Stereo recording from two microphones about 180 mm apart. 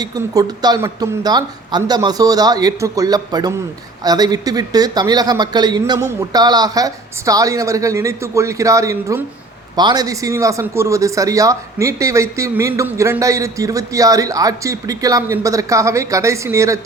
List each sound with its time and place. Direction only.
0.0 s speech: 20° right (ahead or behind)